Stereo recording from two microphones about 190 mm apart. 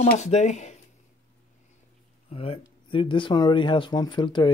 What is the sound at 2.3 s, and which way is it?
Speech, 30° left (ahead or behind).